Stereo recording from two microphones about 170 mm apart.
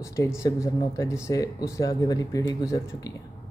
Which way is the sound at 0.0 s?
20° left (ahead or behind).